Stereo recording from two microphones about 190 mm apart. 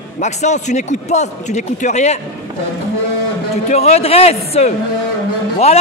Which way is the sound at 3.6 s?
35° left (ahead or behind).